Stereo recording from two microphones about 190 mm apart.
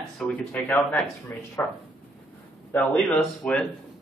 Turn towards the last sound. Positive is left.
turn(degrees=5)  # may be behind; listen again after turning